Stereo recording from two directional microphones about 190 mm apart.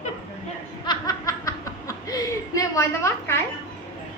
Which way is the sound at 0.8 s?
20° left (ahead or behind).